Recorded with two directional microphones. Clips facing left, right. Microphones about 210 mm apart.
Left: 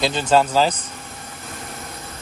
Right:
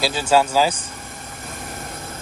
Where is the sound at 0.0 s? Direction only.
10° right (ahead or behind).